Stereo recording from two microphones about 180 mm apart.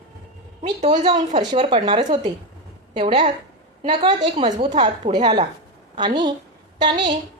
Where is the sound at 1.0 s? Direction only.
40° right (ahead or behind).